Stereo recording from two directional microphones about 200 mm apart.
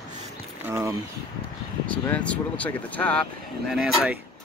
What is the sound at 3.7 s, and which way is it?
Speech, 5° right (ahead or behind).